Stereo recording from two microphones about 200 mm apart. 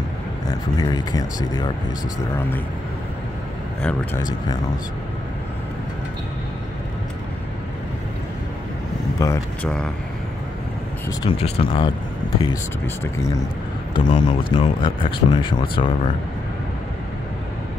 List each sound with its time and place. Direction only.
0.5 s speech: 20° left (ahead or behind)
3.8 s speech: 10° left (ahead or behind)
9.2 s speech: 15° left (ahead or behind)
11.1 s speech: 30° left (ahead or behind)
13.9 s speech: 20° left (ahead or behind)